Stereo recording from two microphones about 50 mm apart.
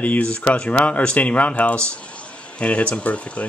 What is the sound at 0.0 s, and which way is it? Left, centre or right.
Speech, left.